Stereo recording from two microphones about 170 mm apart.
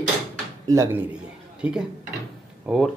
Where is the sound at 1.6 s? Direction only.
5° right (ahead or behind).